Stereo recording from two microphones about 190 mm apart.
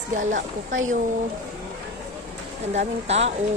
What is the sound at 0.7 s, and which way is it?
Speech, 90° right.